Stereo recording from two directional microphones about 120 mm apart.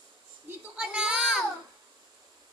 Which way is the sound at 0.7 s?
10° right (ahead or behind).